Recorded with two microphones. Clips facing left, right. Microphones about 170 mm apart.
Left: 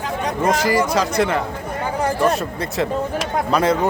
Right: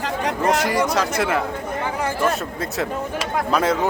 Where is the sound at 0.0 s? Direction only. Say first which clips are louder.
Even; 75° right (ahead or behind).